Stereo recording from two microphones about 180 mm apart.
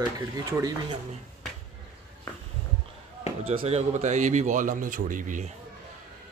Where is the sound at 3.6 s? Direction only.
35° right (ahead or behind).